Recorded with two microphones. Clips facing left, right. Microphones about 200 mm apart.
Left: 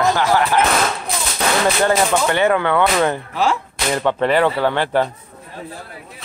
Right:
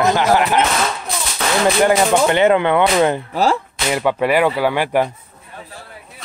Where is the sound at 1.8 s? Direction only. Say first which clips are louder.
Right 4 dB; 20° right (ahead or behind).